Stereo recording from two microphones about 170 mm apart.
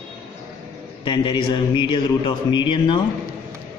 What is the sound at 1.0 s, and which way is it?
Speech, 30° left (ahead or behind).